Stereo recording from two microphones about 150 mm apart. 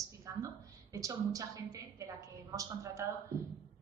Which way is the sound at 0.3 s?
20° right (ahead or behind).